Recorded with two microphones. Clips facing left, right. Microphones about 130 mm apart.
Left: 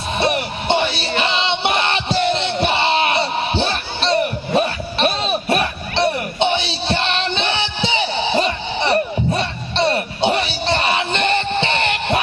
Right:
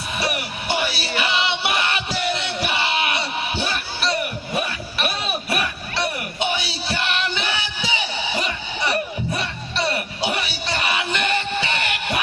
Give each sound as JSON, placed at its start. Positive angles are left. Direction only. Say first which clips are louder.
{"t": 0.2, "sound": "music", "louder": "left 7 dB", "side_deg": 25}